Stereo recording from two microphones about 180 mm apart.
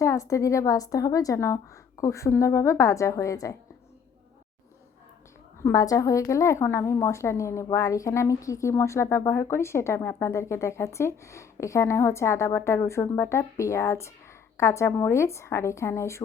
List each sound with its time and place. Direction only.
0.0 s a woman's voice: 15° left (ahead or behind)
5.5 s a woman's voice: 15° left (ahead or behind)